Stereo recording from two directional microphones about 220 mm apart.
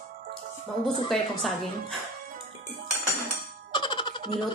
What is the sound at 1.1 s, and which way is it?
Speech, centre (ahead or behind).